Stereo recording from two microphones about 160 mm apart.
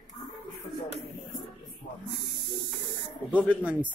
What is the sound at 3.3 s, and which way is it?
Speech, 10° right (ahead or behind).